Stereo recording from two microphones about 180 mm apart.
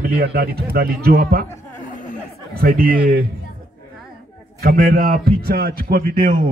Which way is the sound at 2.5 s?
55° right (ahead or behind).